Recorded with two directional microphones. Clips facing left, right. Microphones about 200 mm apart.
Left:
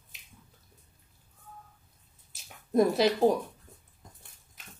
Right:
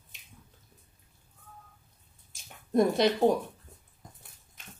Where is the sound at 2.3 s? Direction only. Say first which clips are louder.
Right 1 dB; 5° left (ahead or behind).